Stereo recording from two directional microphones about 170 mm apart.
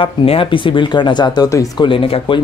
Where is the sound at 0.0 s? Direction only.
35° left (ahead or behind).